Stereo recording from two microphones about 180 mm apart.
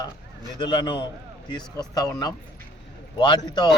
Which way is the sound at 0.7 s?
30° left (ahead or behind).